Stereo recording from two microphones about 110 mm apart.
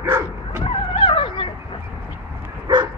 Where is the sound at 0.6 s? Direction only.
60° left (ahead or behind).